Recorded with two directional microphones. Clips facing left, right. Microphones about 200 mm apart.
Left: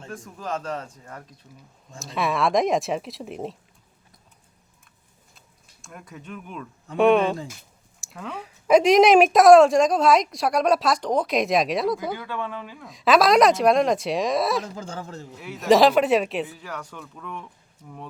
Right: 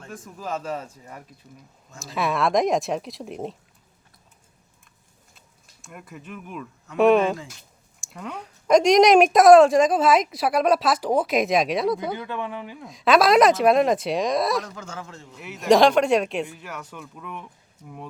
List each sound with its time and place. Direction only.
0.1 s a woman's voice: 5° right (ahead or behind)
5.8 s a woman's voice: 5° right (ahead or behind)
12.1 s speech: 20° right (ahead or behind)
12.8 s a woman's voice: centre (ahead or behind)
14.6 s speech: 30° left (ahead or behind)
15.3 s a woman's voice: centre (ahead or behind)